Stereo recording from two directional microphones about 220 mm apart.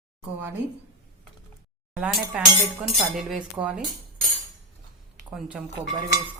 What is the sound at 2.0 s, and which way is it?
Speech, 5° right (ahead or behind).